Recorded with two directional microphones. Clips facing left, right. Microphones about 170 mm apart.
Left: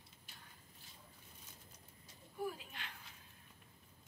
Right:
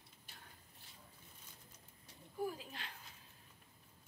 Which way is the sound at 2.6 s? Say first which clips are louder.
Right 2 dB; 35° right (ahead or behind).